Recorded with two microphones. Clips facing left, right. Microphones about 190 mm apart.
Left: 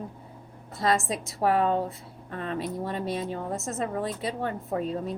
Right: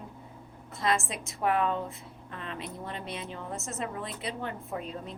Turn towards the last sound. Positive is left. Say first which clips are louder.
# left 8 dB
turn(degrees=40)  # may be behind; listen again after turning